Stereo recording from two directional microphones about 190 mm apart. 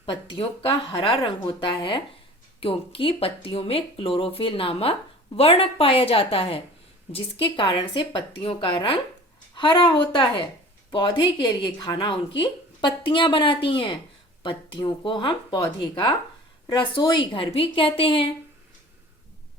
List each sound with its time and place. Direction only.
0.0 s speech: 25° left (ahead or behind)